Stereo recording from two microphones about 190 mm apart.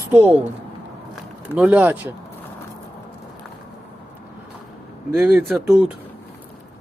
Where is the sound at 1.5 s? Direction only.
10° right (ahead or behind).